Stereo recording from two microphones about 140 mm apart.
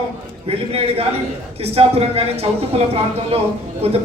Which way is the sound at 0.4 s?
45° right (ahead or behind).